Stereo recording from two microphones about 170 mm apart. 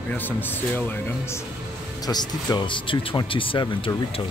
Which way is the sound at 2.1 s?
25° left (ahead or behind).